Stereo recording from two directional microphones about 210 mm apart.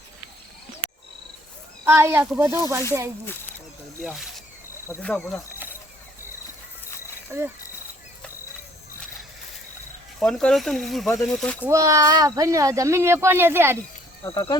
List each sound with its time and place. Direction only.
1.8 s speech: 10° right (ahead or behind)
4.0 s speech: centre (ahead or behind)
7.3 s speech: 15° right (ahead or behind)
10.2 s speech: centre (ahead or behind)
11.7 s speech: 15° right (ahead or behind)
14.3 s speech: 25° left (ahead or behind)